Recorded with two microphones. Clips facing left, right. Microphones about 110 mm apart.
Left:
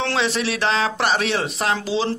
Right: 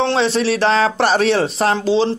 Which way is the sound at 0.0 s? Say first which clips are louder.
Right 6 dB; 30° right (ahead or behind).